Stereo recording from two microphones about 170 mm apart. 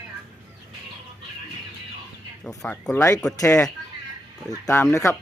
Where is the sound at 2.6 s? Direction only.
5° left (ahead or behind).